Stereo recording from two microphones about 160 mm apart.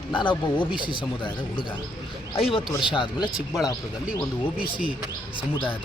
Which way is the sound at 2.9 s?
30° left (ahead or behind).